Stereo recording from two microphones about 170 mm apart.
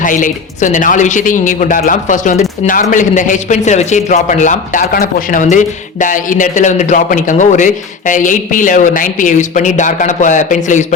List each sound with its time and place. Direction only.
0.0 s a man's voice: 50° left (ahead or behind)